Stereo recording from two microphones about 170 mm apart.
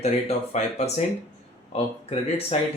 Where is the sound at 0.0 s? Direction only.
40° left (ahead or behind).